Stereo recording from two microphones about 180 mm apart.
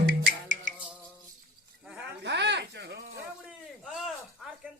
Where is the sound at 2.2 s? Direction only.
70° right (ahead or behind).